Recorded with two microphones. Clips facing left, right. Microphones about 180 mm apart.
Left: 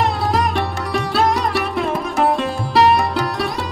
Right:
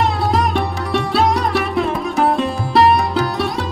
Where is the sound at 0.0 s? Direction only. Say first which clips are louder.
Right 1 dB; centre (ahead or behind).